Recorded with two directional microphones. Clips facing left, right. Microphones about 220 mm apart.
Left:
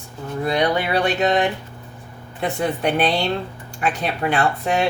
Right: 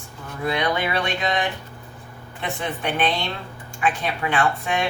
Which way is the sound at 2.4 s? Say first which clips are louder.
Left 6 dB; 40° left (ahead or behind).